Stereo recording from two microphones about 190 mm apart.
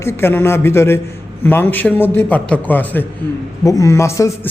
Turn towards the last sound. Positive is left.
turn(degrees=15)  # may be behind; listen again after turning